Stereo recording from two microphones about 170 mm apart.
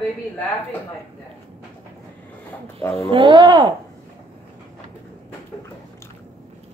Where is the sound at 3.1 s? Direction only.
30° right (ahead or behind).